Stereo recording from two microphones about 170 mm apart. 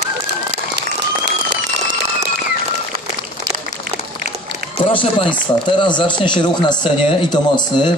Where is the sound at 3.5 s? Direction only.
60° right (ahead or behind).